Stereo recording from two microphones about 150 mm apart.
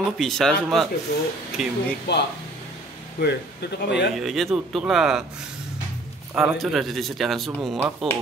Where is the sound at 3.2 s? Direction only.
90° left.